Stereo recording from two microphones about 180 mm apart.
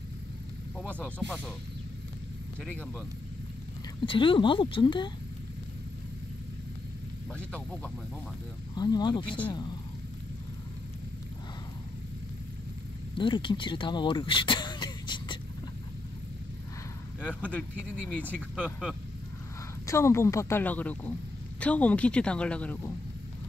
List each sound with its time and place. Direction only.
0.7 s speech: 5° left (ahead or behind)
4.0 s speech: 30° left (ahead or behind)
7.3 s speech: 5° left (ahead or behind)
8.7 s speech: 20° left (ahead or behind)
13.2 s speech: 25° left (ahead or behind)
17.2 s speech: 5° left (ahead or behind)
19.9 s speech: 15° left (ahead or behind)